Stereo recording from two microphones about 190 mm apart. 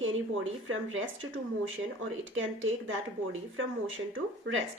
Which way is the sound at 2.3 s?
90° right.